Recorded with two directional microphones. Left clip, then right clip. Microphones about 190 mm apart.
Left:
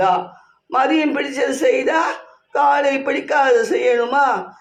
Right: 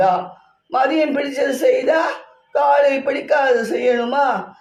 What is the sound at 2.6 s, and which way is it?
A man's voice, 25° left (ahead or behind).